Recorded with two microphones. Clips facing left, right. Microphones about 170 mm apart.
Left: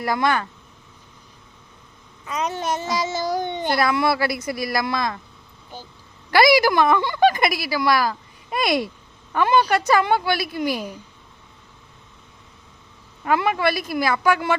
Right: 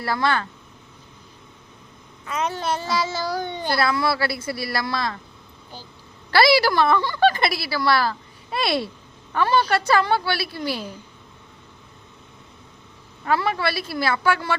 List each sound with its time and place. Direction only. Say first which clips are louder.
0.0 s a child's voice: left 2 dB; 15° left (ahead or behind)
2.2 s a child's voice: even; 15° left (ahead or behind)
6.3 s a child's voice: left 2 dB; 15° left (ahead or behind)
13.2 s a child's voice: left 2 dB; 15° left (ahead or behind)